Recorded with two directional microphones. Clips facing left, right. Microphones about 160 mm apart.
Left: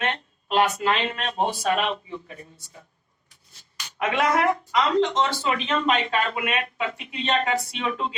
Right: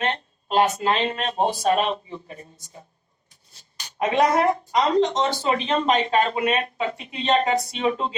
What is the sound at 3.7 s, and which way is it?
Speech, 35° right (ahead or behind).